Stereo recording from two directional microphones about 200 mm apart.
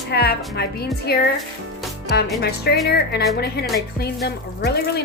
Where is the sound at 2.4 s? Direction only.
55° left (ahead or behind).